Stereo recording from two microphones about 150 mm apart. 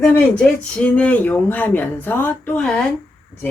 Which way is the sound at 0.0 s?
10° left (ahead or behind).